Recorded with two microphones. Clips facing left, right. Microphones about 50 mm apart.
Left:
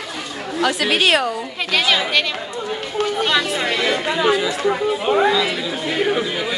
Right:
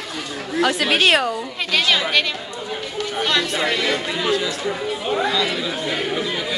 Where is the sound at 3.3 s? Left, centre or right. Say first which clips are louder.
Left 1 dB; centre.